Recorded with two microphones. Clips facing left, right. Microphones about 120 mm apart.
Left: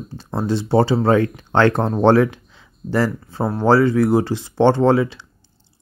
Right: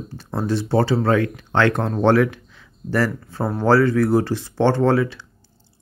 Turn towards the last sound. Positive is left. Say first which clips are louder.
# left 2 dB
turn(degrees=20)  # may be behind; listen again after turning